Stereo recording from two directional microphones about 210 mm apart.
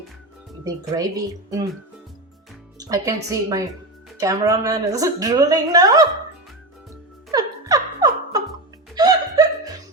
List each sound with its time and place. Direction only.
0.6 s a woman's voice: 15° right (ahead or behind)
2.7 s a woman's voice: 15° right (ahead or behind)
7.3 s music: 15° right (ahead or behind)